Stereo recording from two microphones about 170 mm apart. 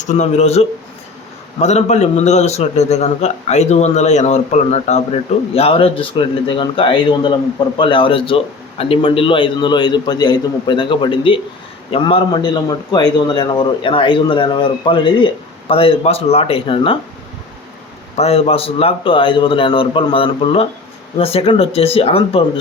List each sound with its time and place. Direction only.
0.0 s a man's voice: 45° left (ahead or behind)
18.2 s a man's voice: 35° left (ahead or behind)